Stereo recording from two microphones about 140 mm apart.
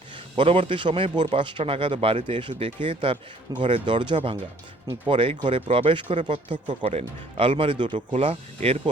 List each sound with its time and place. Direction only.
0.3 s a man's voice: 40° right (ahead or behind)
8.1 s speech: 45° right (ahead or behind)